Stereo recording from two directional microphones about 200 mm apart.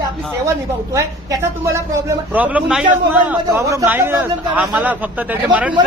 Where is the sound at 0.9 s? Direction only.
15° right (ahead or behind).